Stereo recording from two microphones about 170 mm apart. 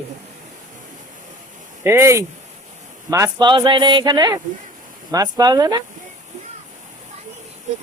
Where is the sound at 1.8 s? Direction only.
15° right (ahead or behind).